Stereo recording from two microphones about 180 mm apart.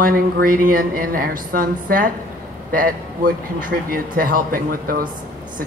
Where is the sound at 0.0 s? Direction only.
55° right (ahead or behind).